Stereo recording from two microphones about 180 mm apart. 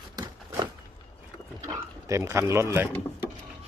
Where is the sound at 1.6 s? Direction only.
15° right (ahead or behind).